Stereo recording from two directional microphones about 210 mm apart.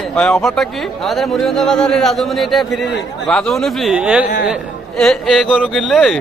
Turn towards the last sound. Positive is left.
turn(degrees=0)  # may be behind; listen again after turning